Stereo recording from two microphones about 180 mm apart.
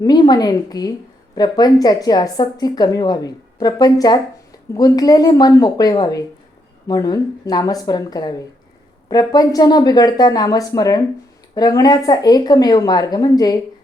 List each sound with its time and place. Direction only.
0.0 s a woman's voice: 25° left (ahead or behind)